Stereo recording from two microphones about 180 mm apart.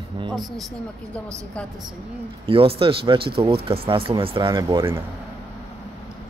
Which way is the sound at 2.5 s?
30° right (ahead or behind).